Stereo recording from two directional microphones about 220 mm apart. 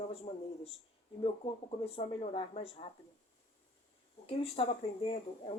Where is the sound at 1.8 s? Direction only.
25° left (ahead or behind).